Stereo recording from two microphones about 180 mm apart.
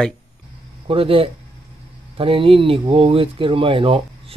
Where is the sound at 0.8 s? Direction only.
30° right (ahead or behind).